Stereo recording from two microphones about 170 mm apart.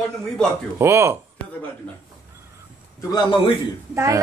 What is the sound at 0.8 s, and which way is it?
Speech, 15° right (ahead or behind).